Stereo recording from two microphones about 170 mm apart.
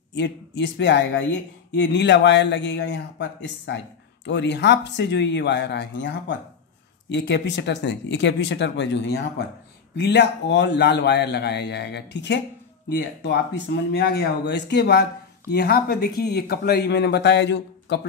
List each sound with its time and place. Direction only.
0.1 s a man's voice: 90° left